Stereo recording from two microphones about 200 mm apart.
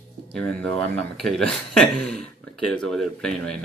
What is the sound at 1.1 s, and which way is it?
Speech, centre (ahead or behind).